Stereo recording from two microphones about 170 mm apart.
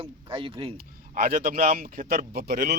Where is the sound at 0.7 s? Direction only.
60° right (ahead or behind).